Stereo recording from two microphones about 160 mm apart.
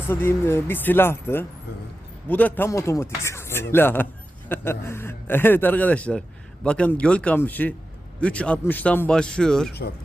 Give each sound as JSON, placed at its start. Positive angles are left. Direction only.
{"t": 0.1, "sound": "a man's voice", "side_deg": 15}